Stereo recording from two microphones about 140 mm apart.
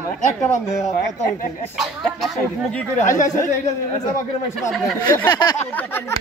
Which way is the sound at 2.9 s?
65° left (ahead or behind).